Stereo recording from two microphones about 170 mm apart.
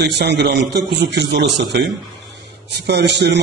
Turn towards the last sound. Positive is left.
turn(degrees=-85)